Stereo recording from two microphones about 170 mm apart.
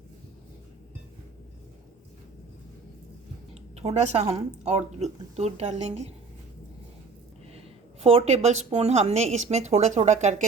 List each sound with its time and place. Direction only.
3.5 s speech: 40° right (ahead or behind)
8.0 s speech: 40° right (ahead or behind)